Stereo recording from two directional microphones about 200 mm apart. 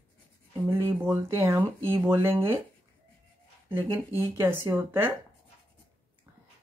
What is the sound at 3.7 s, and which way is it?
Speech, 10° right (ahead or behind).